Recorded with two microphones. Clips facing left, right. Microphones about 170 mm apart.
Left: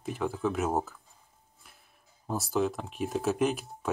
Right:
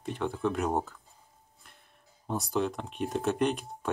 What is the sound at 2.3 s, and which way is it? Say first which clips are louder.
Speech: left 1 dB; centre (ahead or behind).